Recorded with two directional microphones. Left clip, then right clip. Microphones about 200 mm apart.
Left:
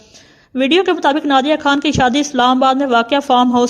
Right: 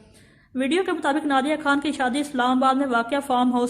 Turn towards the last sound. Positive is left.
turn(degrees=35)  # may be behind; listen again after turning